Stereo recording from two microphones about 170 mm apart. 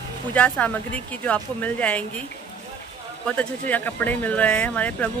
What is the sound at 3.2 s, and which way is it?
Speech, 10° left (ahead or behind).